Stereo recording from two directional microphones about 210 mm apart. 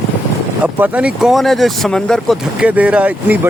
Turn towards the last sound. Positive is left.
turn(degrees=-5)  # may be behind; listen again after turning